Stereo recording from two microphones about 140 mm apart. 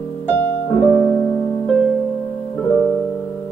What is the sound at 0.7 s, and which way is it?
Music, 15° left (ahead or behind).